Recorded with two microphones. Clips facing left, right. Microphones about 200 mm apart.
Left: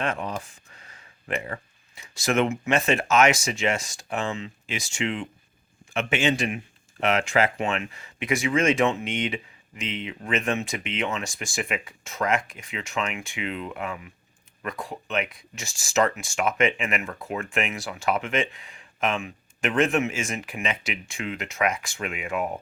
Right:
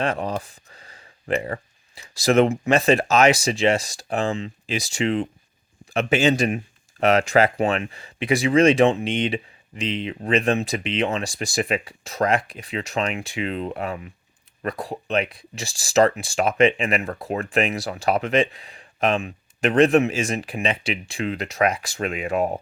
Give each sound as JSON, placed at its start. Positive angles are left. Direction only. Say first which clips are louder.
{"t": 0.0, "sound": "a man's voice", "louder": "right 4 dB", "side_deg": -35}